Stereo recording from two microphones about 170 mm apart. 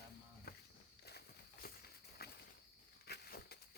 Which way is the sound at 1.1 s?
70° left (ahead or behind).